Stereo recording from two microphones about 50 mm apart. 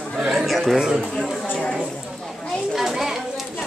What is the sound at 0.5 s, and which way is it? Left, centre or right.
Speech, centre.